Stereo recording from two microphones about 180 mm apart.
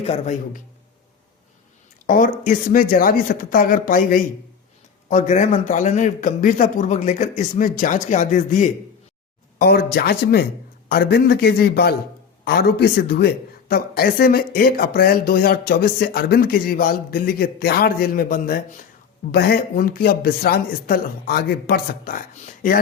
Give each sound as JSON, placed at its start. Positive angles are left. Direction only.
{"t": 0.0, "sound": "a man's voice", "side_deg": 40}
{"t": 2.0, "sound": "a man's voice", "side_deg": 50}
{"t": 9.6, "sound": "speech", "side_deg": 55}